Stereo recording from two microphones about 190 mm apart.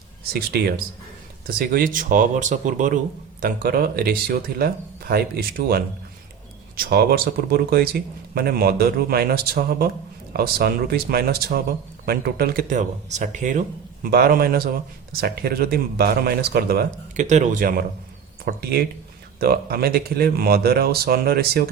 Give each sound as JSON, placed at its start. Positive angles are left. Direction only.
{"t": 0.3, "sound": "speech", "side_deg": -55}
{"t": 17.2, "sound": "speech", "side_deg": -40}